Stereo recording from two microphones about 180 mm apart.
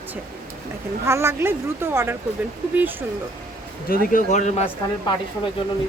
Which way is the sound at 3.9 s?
45° left (ahead or behind).